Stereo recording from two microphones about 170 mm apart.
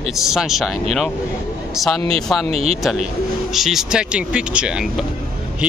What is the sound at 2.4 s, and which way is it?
Speech, 35° right (ahead or behind).